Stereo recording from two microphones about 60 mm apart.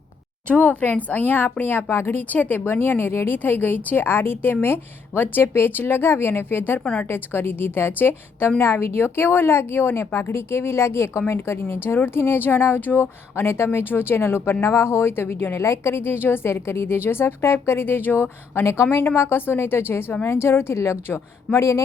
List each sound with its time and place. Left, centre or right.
0.4 s speech: left
6.7 s a woman's voice: left
7.1 s a woman's voice: left